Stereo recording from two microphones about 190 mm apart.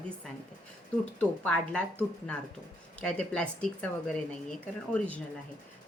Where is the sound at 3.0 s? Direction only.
5° left (ahead or behind).